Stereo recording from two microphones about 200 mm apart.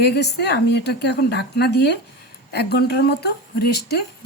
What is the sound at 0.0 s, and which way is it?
A woman's voice, 55° left (ahead or behind).